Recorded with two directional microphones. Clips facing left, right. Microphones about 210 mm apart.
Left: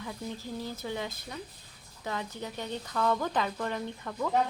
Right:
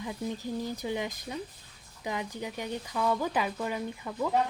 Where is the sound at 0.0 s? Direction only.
15° right (ahead or behind).